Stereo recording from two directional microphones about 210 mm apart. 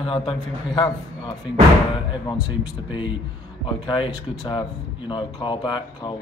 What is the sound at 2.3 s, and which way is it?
Speech, 20° left (ahead or behind).